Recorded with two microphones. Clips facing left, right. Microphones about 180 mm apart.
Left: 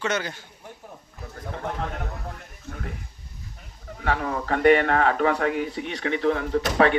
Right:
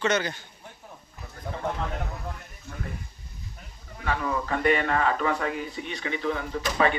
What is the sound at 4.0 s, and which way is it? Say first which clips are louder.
Speech: left 2 dB; 65° left (ahead or behind).